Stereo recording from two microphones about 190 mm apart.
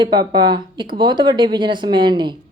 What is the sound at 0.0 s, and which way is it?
Speech, 25° right (ahead or behind).